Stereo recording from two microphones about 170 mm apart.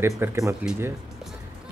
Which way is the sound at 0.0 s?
15° right (ahead or behind).